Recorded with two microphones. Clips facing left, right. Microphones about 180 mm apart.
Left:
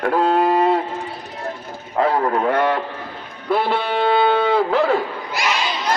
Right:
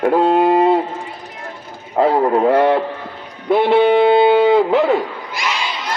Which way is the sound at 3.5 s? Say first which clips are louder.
Right 8 dB; 20° right (ahead or behind).